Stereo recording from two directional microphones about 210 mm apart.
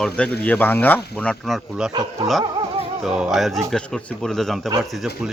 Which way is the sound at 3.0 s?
Centre (ahead or behind).